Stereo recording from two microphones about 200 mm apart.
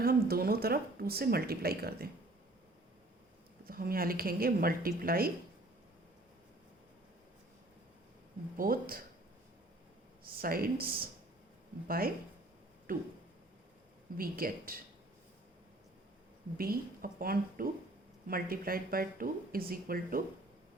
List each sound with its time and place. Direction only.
0.0 s speech: 50° right (ahead or behind)
3.7 s speech: 45° right (ahead or behind)
8.5 s speech: 45° right (ahead or behind)
10.3 s speech: 45° right (ahead or behind)
14.2 s speech: 45° right (ahead or behind)
16.6 s speech: 45° right (ahead or behind)